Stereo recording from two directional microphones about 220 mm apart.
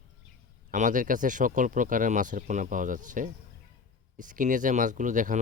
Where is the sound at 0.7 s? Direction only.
35° right (ahead or behind).